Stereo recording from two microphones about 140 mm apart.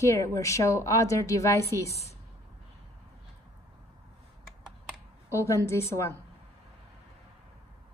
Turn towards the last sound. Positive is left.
turn(degrees=20)  # may be behind; listen again after turning